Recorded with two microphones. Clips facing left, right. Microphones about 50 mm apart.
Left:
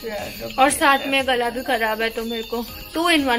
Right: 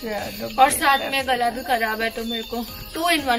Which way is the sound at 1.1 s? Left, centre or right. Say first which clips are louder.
Left 2 dB; left.